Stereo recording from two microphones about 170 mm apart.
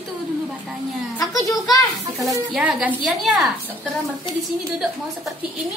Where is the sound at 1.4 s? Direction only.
20° left (ahead or behind).